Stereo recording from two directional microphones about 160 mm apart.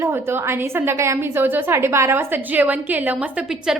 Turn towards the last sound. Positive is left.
turn(degrees=-5)  # may be behind; listen again after turning